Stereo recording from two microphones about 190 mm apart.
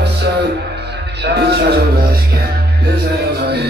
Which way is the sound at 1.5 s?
55° right (ahead or behind).